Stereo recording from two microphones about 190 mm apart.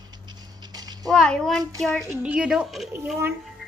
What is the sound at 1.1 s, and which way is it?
A child's voice, 5° left (ahead or behind).